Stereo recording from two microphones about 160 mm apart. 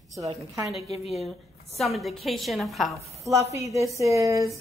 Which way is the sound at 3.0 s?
20° right (ahead or behind).